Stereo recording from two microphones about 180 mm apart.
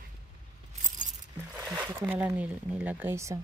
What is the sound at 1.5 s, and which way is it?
Speech, 10° right (ahead or behind).